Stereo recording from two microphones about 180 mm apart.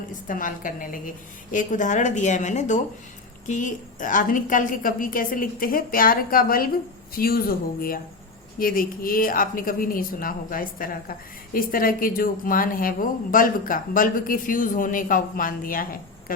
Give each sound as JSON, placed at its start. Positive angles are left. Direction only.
{"t": 0.3, "sound": "speech", "side_deg": 50}